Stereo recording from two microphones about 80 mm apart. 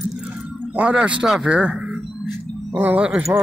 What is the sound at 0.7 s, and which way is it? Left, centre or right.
Speech, centre.